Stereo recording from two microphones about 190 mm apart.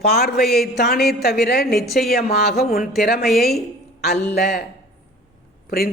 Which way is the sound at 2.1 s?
55° left (ahead or behind).